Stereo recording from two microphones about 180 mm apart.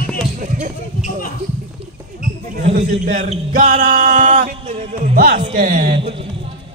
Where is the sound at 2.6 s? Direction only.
45° right (ahead or behind).